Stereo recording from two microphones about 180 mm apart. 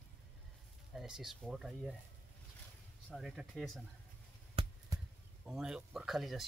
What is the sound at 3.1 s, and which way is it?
Speech, centre (ahead or behind).